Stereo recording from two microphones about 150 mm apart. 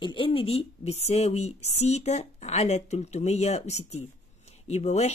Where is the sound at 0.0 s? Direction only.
35° left (ahead or behind).